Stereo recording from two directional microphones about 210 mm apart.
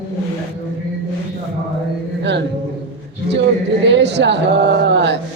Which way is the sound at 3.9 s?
55° right (ahead or behind).